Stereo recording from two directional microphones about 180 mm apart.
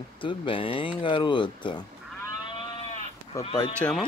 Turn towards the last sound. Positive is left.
turn(degrees=5)  # may be behind; listen again after turning